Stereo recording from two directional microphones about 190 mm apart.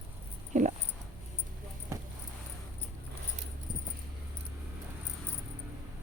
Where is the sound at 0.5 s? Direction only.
40° right (ahead or behind).